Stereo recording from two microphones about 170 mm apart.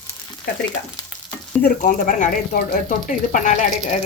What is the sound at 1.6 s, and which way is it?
Speech, 50° left (ahead or behind).